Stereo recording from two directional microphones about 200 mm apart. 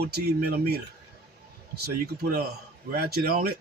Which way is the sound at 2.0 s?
50° right (ahead or behind).